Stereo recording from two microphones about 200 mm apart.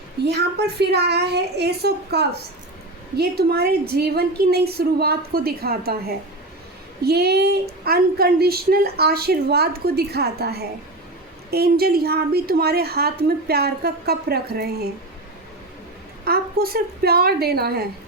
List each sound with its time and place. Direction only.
0.3 s speech: 55° right (ahead or behind)
16.2 s speech: 50° right (ahead or behind)